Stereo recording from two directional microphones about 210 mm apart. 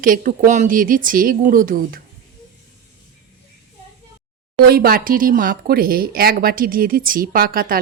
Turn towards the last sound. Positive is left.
turn(degrees=-45)  # may be behind; listen again after turning